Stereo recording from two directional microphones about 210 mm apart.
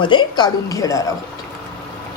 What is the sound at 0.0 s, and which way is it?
A woman's voice, 20° left (ahead or behind).